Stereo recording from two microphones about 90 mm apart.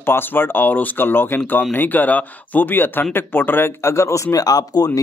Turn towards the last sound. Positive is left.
turn(degrees=45)  # may be behind; listen again after turning